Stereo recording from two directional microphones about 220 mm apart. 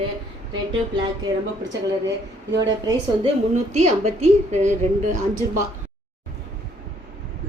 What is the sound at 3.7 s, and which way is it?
Speech, 30° right (ahead or behind).